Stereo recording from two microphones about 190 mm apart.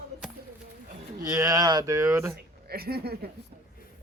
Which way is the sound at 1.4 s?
20° right (ahead or behind).